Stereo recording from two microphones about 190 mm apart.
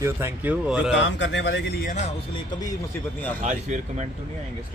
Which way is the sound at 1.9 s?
35° left (ahead or behind).